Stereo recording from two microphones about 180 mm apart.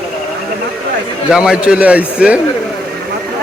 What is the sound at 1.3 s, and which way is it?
Speech, 5° right (ahead or behind).